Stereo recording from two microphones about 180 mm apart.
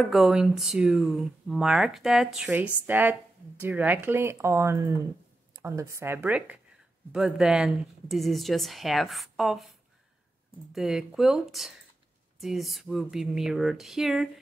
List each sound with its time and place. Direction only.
0.0 s speech: centre (ahead or behind)
10.7 s speech: centre (ahead or behind)